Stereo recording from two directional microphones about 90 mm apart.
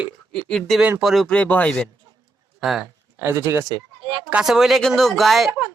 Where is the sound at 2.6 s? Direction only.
5° right (ahead or behind).